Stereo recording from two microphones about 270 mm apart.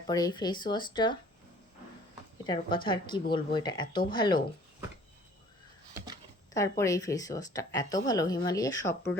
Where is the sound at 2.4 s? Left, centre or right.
Centre.